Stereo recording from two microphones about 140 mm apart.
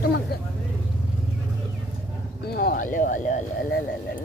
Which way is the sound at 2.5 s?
90° left.